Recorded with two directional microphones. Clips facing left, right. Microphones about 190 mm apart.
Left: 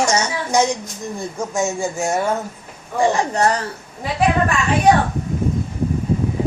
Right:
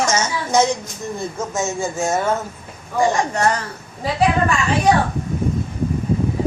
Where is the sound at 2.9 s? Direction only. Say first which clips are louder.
Left 1 dB; 35° left (ahead or behind).